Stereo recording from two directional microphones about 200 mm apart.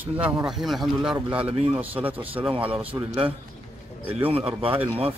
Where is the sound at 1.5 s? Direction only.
30° right (ahead or behind).